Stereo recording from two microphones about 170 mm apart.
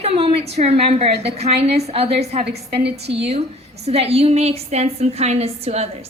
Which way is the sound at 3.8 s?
40° right (ahead or behind).